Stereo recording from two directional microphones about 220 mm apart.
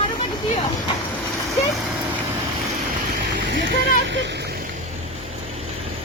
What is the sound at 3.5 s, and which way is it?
Speech, 55° right (ahead or behind).